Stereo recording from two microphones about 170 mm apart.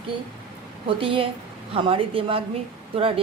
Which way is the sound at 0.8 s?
30° right (ahead or behind).